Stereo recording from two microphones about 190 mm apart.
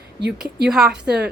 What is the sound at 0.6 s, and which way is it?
Speech, 5° right (ahead or behind).